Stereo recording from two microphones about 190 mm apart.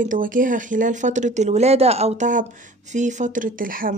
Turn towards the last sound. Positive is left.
turn(degrees=-45)  # may be behind; listen again after turning